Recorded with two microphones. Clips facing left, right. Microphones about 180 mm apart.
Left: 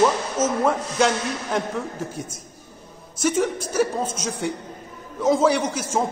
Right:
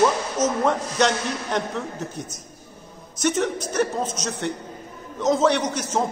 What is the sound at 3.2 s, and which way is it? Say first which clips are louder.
Speech: left 1 dB; 10° left (ahead or behind).